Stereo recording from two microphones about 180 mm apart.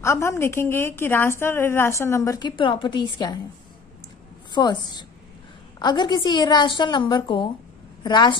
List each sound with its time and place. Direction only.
0.0 s a woman's voice: 15° left (ahead or behind)
4.5 s a woman's voice: 25° left (ahead or behind)